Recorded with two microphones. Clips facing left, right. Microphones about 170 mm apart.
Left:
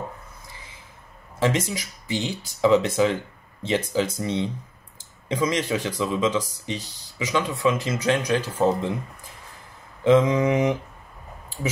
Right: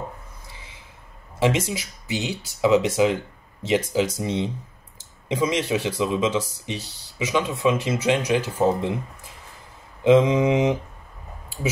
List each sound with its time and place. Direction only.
1.4 s speech: 10° right (ahead or behind)
10.0 s speech: 15° right (ahead or behind)